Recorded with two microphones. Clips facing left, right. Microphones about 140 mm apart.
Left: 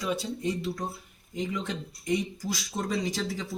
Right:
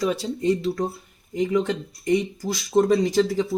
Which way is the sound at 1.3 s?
80° right.